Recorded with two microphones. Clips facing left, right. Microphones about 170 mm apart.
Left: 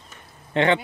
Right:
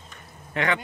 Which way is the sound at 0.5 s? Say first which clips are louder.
Left 6 dB; 30° left (ahead or behind).